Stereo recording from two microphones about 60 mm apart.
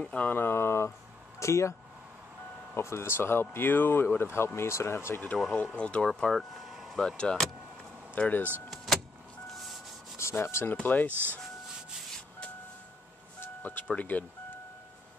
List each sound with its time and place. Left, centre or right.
0.0 s speech: left
0.3 s speech: left
5.8 s speech: centre
6.0 s speech: centre
6.5 s vehicle: centre
7.0 s speech: centre
8.2 s speech: left
8.6 s vehicle: centre
10.1 s rub: left
10.7 s speech: left
13.4 s speech: left